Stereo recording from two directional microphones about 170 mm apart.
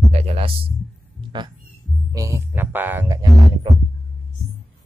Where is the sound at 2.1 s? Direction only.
15° right (ahead or behind).